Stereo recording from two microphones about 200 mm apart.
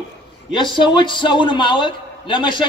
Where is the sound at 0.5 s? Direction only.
25° left (ahead or behind).